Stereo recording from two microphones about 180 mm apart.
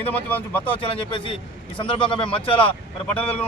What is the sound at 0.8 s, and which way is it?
Speech, 30° left (ahead or behind).